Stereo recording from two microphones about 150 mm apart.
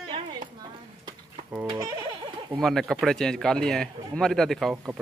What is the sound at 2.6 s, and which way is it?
A man's voice, centre (ahead or behind).